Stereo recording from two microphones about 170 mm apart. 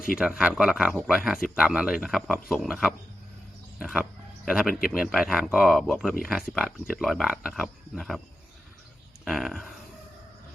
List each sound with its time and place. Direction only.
0.2 s speech: 5° right (ahead or behind)
9.2 s speech: centre (ahead or behind)